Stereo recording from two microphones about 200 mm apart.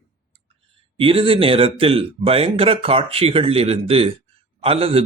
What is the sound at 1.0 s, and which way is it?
Speech, 25° right (ahead or behind).